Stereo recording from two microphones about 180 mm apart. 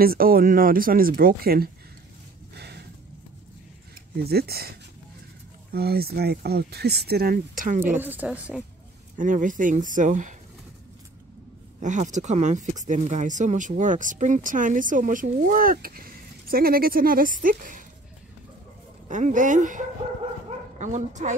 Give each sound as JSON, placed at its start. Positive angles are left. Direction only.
{"t": 0.0, "sound": "speech", "side_deg": -55}
{"t": 2.5, "sound": "a sound", "side_deg": -65}
{"t": 4.2, "sound": "speech", "side_deg": -60}
{"t": 7.8, "sound": "speech", "side_deg": -10}
{"t": 9.1, "sound": "speech", "side_deg": -45}
{"t": 11.8, "sound": "speech", "side_deg": -40}
{"t": 19.0, "sound": "speech", "side_deg": -45}